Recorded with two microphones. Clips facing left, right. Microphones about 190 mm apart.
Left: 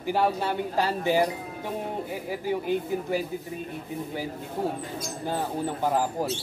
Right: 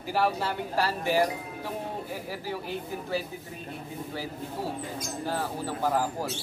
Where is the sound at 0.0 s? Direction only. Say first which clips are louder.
Left 2 dB; 20° left (ahead or behind).